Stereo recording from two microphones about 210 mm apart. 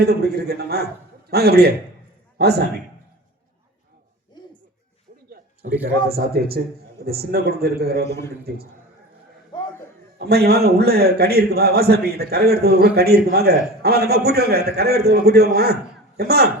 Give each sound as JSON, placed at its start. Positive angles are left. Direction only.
{"t": 0.0, "sound": "a man's voice", "side_deg": -50}
{"t": 6.1, "sound": "a man's voice", "side_deg": -50}
{"t": 10.2, "sound": "a man's voice", "side_deg": -50}